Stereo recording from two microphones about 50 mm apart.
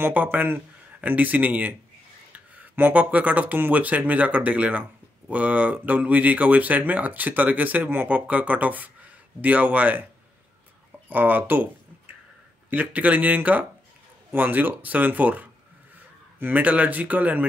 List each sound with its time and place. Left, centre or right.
0.1 s speech: right
11.1 s speech: right
12.6 s a man's voice: right
16.6 s speech: right